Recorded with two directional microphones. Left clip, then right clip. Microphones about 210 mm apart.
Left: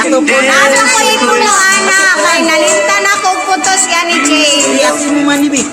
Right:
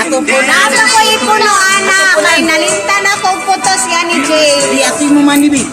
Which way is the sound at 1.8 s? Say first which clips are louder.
Even; 5° right (ahead or behind).